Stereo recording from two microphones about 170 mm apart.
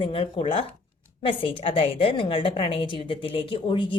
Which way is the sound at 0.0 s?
30° left (ahead or behind).